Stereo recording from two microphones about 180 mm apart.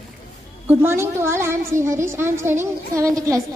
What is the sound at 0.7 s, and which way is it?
A woman's voice, 15° right (ahead or behind).